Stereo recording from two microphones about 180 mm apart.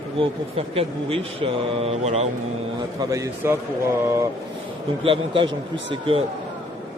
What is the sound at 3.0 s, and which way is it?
Speech, 15° right (ahead or behind).